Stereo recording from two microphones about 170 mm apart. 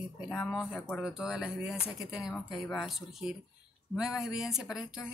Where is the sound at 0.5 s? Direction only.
Centre (ahead or behind).